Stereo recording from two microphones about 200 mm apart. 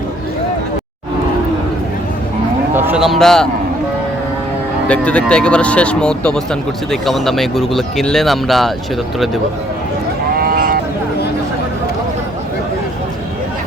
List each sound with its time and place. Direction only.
2.7 s speech: 10° right (ahead or behind)
4.9 s speech: 5° left (ahead or behind)
10.4 s sheep: 45° right (ahead or behind)